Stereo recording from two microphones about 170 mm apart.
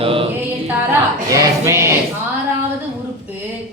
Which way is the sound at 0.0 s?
30° right (ahead or behind).